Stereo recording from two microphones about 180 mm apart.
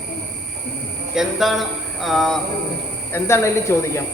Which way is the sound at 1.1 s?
Centre (ahead or behind).